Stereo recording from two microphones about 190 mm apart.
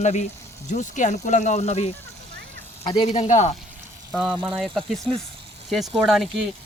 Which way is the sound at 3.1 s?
40° left (ahead or behind).